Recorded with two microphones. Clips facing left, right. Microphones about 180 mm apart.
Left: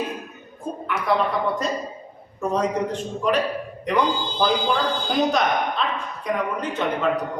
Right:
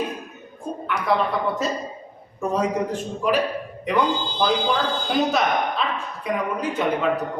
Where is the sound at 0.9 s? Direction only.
Centre (ahead or behind).